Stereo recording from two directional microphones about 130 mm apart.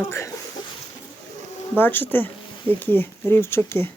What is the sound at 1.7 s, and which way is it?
Speech, 15° left (ahead or behind).